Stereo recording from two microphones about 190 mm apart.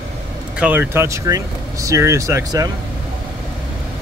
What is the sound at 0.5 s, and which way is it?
Speech, 10° right (ahead or behind).